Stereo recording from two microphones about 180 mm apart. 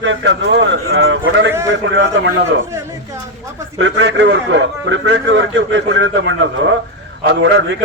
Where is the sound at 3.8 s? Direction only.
80° right.